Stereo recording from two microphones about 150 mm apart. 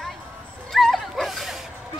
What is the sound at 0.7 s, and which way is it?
Dog, centre (ahead or behind).